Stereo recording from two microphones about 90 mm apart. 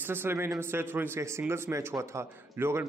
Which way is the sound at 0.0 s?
25° right (ahead or behind).